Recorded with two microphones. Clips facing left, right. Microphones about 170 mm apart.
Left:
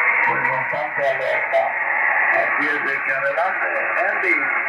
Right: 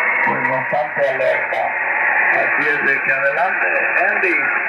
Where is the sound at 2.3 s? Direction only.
70° right (ahead or behind).